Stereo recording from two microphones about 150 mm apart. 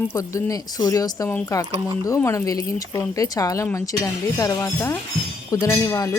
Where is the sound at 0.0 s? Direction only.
20° left (ahead or behind).